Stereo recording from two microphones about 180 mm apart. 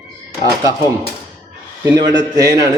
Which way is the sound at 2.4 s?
20° right (ahead or behind).